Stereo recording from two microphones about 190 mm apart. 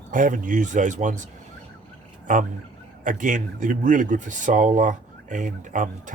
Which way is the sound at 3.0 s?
45° right (ahead or behind).